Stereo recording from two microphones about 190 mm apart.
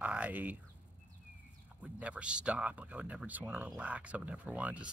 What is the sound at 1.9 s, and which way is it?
Speech, 5° right (ahead or behind).